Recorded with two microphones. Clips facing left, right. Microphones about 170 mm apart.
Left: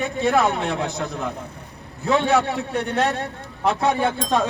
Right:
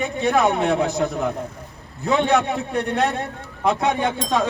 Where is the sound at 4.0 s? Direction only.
15° right (ahead or behind).